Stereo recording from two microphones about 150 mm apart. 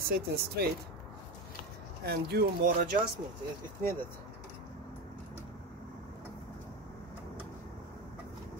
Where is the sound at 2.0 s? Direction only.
90° right.